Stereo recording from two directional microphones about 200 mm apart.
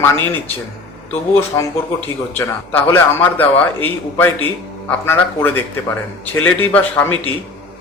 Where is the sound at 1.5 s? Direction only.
15° left (ahead or behind).